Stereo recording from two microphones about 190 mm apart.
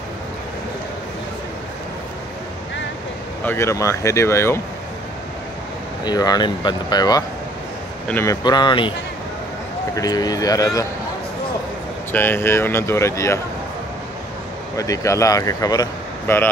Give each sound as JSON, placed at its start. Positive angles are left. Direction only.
{"t": 3.4, "sound": "speech", "side_deg": 15}
{"t": 6.0, "sound": "speech", "side_deg": 20}
{"t": 9.9, "sound": "speech", "side_deg": 20}
{"t": 12.1, "sound": "speech", "side_deg": 10}
{"t": 14.8, "sound": "speech", "side_deg": 15}